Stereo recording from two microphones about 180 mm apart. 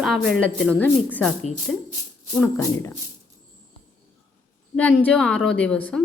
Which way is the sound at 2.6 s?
15° left (ahead or behind).